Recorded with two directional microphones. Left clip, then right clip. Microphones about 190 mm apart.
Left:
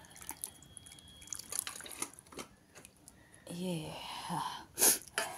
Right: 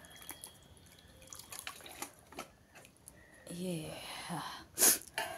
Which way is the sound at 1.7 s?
15° left (ahead or behind).